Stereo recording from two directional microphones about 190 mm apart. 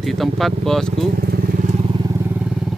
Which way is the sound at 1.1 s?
50° right (ahead or behind).